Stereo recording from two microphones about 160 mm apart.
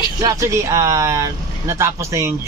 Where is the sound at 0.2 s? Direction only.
20° right (ahead or behind).